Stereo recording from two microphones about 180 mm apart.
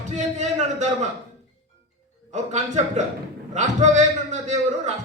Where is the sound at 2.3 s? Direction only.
40° right (ahead or behind).